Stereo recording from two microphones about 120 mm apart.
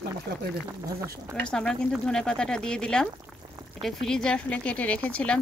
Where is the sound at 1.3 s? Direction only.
5° left (ahead or behind).